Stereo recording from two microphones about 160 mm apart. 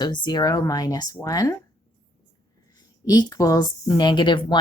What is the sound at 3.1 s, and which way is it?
Speech, 25° left (ahead or behind).